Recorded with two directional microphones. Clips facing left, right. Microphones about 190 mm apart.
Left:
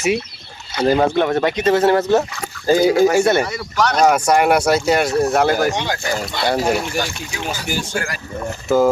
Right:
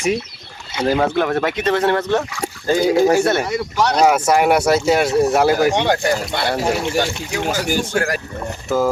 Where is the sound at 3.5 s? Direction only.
25° right (ahead or behind).